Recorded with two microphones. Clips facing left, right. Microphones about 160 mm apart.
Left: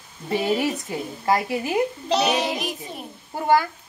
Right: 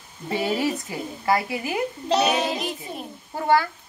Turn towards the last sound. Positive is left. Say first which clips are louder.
# left 1 dB
turn(degrees=15)  # may be behind; listen again after turning